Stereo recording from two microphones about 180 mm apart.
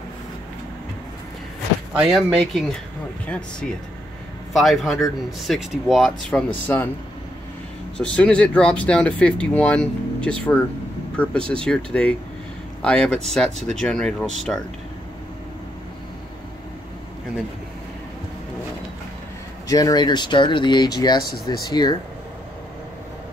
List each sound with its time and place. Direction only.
2.0 s speech: 5° right (ahead or behind)
6.7 s speech: 15° left (ahead or behind)
8.0 s speech: 5° left (ahead or behind)
19.7 s speech: 20° left (ahead or behind)